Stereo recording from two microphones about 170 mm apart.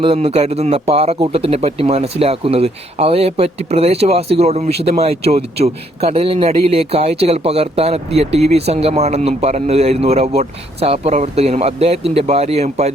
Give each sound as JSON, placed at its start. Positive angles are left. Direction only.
{"t": 0.0, "sound": "speech", "side_deg": -35}